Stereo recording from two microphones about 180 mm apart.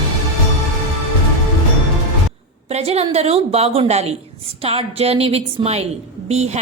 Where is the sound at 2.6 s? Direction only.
35° right (ahead or behind).